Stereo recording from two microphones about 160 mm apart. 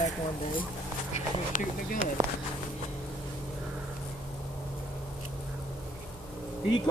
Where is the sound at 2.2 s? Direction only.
25° right (ahead or behind).